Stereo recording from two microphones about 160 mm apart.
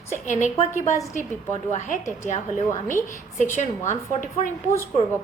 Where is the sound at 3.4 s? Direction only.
50° left (ahead or behind).